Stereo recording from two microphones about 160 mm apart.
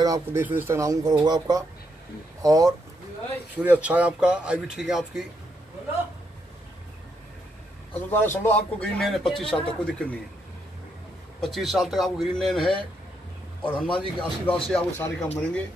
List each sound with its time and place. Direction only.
0.0 s speech: 20° right (ahead or behind)
3.5 s speech: 10° right (ahead or behind)
7.9 s a man's voice: 10° left (ahead or behind)
11.4 s a man's voice: centre (ahead or behind)